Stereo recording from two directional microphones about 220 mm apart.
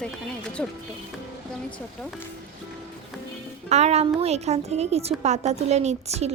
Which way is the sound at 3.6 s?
30° right (ahead or behind).